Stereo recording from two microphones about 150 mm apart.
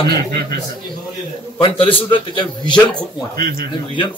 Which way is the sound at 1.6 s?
35° left (ahead or behind).